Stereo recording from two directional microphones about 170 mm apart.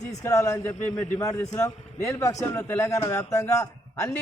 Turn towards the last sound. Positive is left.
turn(degrees=20)  # may be behind; listen again after turning